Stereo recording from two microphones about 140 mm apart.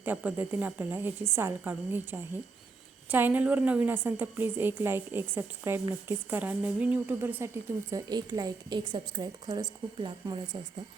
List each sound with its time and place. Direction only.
0.0 s a woman's voice: 10° right (ahead or behind); by 10.6 s 30° right (ahead or behind)